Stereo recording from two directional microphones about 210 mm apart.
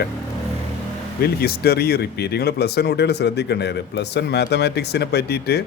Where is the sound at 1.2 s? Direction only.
50° left (ahead or behind).